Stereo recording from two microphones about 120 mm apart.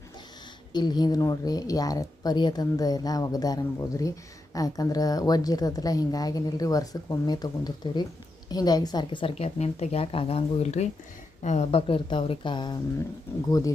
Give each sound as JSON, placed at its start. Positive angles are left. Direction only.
{"t": 0.7, "sound": "a woman's voice", "side_deg": 35}
{"t": 9.3, "sound": "a woman's voice", "side_deg": 65}